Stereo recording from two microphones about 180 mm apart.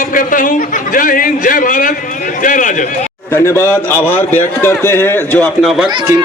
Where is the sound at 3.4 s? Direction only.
15° left (ahead or behind).